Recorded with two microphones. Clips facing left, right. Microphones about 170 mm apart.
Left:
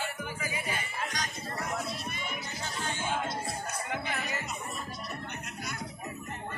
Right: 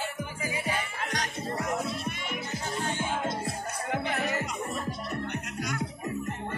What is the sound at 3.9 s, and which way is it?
Music, 50° right (ahead or behind).